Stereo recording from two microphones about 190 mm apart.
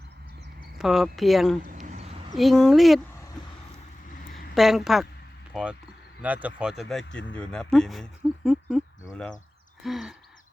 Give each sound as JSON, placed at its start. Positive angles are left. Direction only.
{"t": 0.8, "sound": "speech", "side_deg": 0}
{"t": 1.7, "sound": "a sound", "side_deg": -40}
{"t": 2.3, "sound": "speech", "side_deg": 0}
{"t": 4.5, "sound": "speech", "side_deg": 0}
{"t": 6.2, "sound": "speech", "side_deg": -10}